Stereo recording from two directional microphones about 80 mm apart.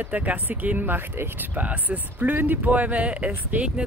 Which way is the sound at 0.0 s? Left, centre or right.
Centre.